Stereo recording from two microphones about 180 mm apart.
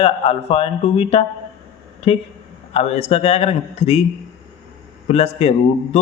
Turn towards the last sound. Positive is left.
turn(degrees=35)  # may be behind; listen again after turning